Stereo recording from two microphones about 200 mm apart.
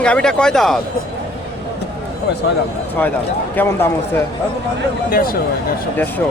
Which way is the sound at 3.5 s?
10° left (ahead or behind).